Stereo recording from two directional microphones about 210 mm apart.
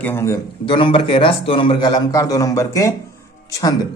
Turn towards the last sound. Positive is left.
turn(degrees=15)  # may be behind; listen again after turning